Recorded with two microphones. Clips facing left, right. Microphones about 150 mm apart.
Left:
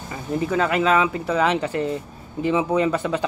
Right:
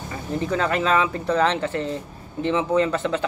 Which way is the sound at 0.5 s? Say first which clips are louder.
Left 2 dB; 5° left (ahead or behind).